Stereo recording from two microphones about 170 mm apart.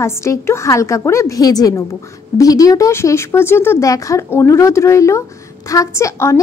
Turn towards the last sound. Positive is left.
turn(degrees=15)  # may be behind; listen again after turning